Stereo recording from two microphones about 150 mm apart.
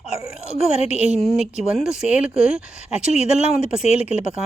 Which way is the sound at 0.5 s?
45° left (ahead or behind).